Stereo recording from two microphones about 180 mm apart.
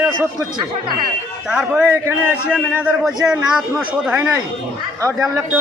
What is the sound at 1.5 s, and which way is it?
A man's voice, 5° right (ahead or behind).